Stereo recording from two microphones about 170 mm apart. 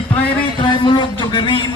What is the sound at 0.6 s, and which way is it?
A man's voice, 30° left (ahead or behind).